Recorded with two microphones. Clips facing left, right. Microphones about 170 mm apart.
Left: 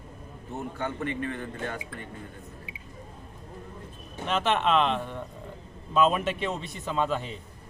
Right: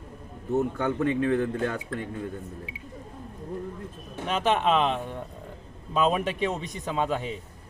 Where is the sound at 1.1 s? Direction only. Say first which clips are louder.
Right 9 dB; 85° right.